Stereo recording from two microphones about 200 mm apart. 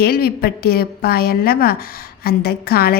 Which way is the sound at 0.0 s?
50° left (ahead or behind).